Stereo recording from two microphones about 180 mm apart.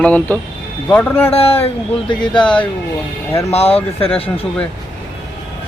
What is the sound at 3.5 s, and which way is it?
Speech, 35° left (ahead or behind).